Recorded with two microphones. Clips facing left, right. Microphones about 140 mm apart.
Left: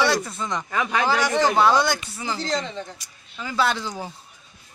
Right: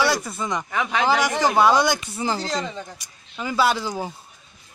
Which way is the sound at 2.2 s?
35° right (ahead or behind).